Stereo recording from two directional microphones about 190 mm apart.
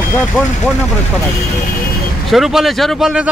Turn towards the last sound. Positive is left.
turn(degrees=0)  # may be behind; listen again after turning